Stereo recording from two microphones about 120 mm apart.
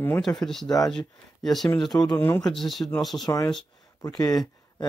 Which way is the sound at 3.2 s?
30° left (ahead or behind).